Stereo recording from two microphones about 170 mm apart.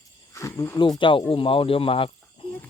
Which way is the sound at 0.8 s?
30° left (ahead or behind).